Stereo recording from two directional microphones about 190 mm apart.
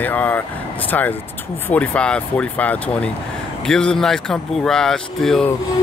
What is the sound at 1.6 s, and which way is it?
Speech, 10° left (ahead or behind).